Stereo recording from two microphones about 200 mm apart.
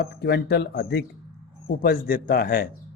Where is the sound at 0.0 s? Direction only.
55° left (ahead or behind).